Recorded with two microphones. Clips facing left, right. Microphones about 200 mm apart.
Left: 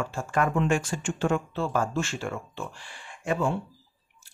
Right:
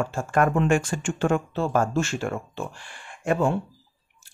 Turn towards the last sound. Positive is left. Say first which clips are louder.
# right 4 dB
turn(degrees=-50)  # may be behind; listen again after turning